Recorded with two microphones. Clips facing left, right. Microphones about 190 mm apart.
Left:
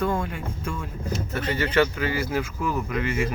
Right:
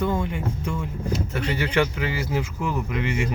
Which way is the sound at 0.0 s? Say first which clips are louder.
Right 1 dB; 20° right (ahead or behind).